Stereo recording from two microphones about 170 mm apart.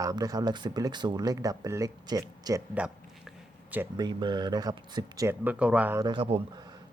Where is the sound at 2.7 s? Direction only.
5° right (ahead or behind).